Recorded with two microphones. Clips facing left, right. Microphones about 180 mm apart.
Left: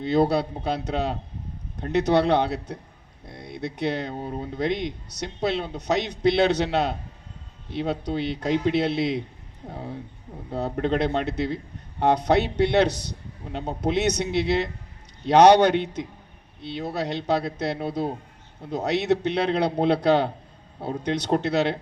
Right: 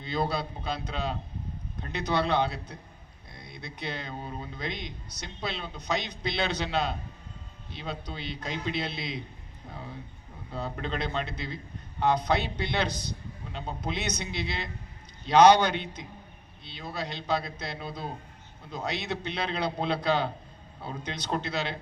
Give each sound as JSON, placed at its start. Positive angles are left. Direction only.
{"t": 0.0, "sound": "speech", "side_deg": 70}
{"t": 3.2, "sound": "a sound", "side_deg": 70}
{"t": 4.2, "sound": "speech", "side_deg": 60}